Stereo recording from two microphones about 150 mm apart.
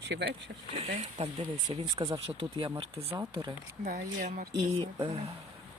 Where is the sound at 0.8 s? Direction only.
45° right (ahead or behind).